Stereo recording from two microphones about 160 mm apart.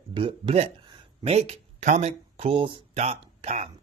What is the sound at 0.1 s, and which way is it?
Speech, 35° right (ahead or behind).